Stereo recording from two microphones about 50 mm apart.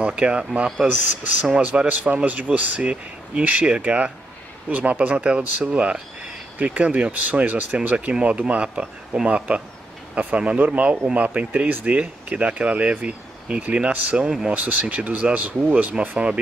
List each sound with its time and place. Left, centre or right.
0.0 s speech: right
0.8 s speech: right